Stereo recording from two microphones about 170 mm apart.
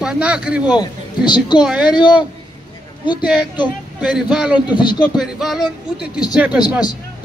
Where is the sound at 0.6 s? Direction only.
25° left (ahead or behind).